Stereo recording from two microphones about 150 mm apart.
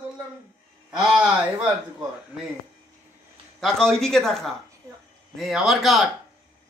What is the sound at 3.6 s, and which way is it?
Speech, 5° left (ahead or behind).